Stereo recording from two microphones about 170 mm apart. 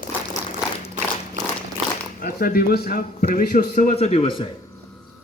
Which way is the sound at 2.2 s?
60° left (ahead or behind).